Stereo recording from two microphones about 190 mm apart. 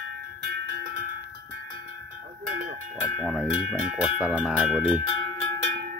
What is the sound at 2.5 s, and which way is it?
Cowbell, 45° right (ahead or behind).